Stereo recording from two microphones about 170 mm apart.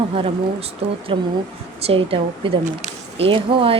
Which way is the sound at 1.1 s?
30° right (ahead or behind).